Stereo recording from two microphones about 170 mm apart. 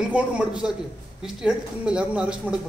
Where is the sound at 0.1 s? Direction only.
5° right (ahead or behind).